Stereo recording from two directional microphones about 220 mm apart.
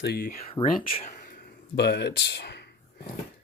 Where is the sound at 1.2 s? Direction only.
50° left (ahead or behind).